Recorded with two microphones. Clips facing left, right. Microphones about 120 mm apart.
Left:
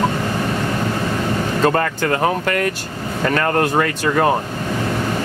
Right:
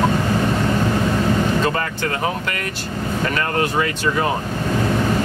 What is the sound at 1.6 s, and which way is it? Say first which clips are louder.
Speech: left 5 dB; 50° left (ahead or behind).